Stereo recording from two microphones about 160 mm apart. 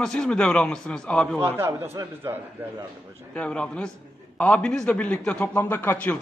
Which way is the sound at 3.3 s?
5° left (ahead or behind).